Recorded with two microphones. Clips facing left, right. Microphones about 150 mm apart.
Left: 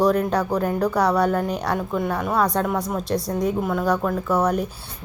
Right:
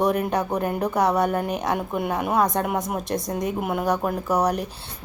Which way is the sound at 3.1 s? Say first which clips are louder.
Left 4 dB; 5° left (ahead or behind).